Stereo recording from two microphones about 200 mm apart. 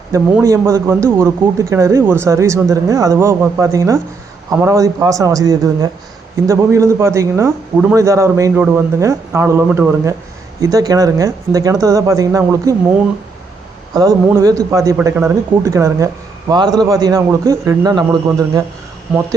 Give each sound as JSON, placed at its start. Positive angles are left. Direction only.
{"t": 0.1, "sound": "speech", "side_deg": -15}
{"t": 13.9, "sound": "a man's voice", "side_deg": -20}